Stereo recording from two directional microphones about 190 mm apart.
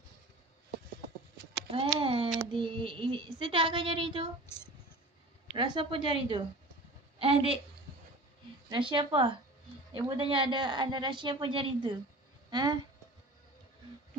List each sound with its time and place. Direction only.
1.7 s speech: 30° right (ahead or behind)
5.5 s speech: 25° right (ahead or behind)
7.2 s a woman's voice: 30° right (ahead or behind)
8.6 s speech: 25° right (ahead or behind)
12.4 s a sound: 20° right (ahead or behind)